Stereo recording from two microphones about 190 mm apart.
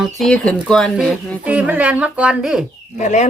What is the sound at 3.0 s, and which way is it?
Speech, 40° left (ahead or behind).